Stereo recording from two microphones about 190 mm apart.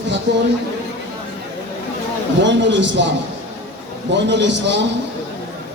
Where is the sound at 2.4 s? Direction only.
70° right (ahead or behind).